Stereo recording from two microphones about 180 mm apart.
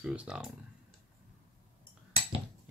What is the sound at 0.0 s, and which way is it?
Speech, 5° right (ahead or behind).